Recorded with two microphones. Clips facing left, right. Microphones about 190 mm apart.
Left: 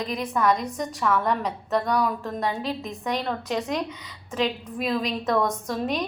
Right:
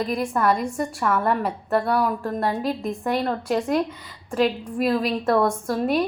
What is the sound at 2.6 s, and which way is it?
A woman's voice, 45° right (ahead or behind).